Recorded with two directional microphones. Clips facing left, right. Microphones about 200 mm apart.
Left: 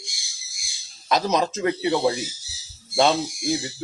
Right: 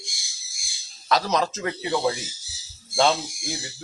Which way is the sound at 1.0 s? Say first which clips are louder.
Left 1 dB; 20° left (ahead or behind).